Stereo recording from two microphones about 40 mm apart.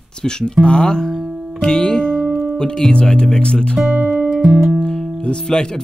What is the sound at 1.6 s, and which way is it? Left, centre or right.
Music, left.